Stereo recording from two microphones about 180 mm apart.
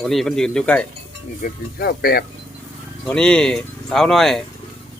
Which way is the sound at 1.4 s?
55° left (ahead or behind).